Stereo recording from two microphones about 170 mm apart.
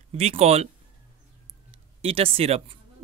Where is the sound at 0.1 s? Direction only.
40° right (ahead or behind).